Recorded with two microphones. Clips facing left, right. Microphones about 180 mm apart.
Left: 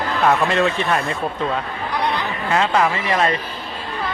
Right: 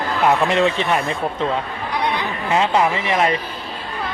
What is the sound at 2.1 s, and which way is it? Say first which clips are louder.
A woman's voice: right 1 dB; 20° right (ahead or behind).